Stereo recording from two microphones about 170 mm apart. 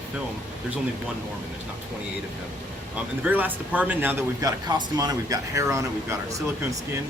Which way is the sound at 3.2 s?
10° right (ahead or behind).